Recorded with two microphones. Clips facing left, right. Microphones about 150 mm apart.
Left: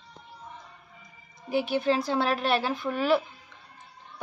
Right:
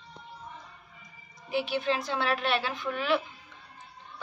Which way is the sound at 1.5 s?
45° left (ahead or behind).